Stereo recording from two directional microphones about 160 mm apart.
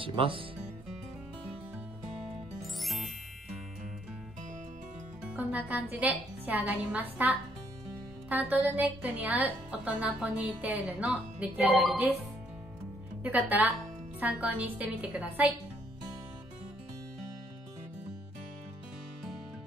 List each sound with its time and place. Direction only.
0.0 s speech: 35° right (ahead or behind)
2.8 s music: centre (ahead or behind)
5.2 s a woman's voice: 10° right (ahead or behind)
13.2 s speech: 10° right (ahead or behind)